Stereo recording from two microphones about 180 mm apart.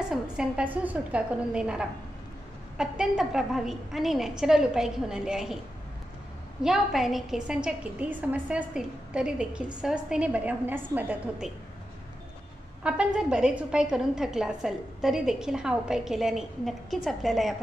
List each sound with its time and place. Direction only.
0.1 s a woman's voice: 5° right (ahead or behind)
6.6 s a woman's voice: centre (ahead or behind)
12.8 s a woman's voice: 5° right (ahead or behind)